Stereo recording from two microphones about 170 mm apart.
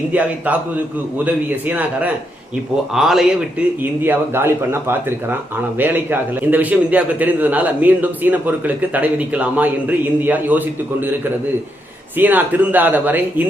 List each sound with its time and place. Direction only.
0.1 s a man's voice: 10° right (ahead or behind)
4.0 s speech: 15° right (ahead or behind)
12.1 s speech: 10° right (ahead or behind)